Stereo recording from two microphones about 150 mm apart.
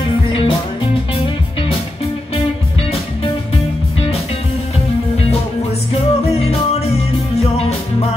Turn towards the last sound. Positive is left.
turn(degrees=40)  # may be behind; listen again after turning